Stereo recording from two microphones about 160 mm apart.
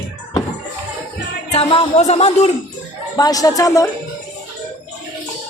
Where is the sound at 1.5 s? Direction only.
35° left (ahead or behind).